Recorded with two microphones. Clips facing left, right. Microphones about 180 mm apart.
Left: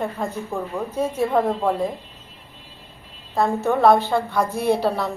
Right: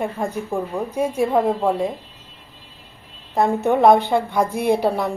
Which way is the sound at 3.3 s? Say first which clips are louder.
Right 2 dB; 20° right (ahead or behind).